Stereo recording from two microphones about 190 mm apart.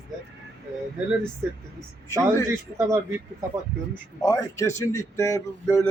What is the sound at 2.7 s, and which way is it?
Speech, 15° right (ahead or behind).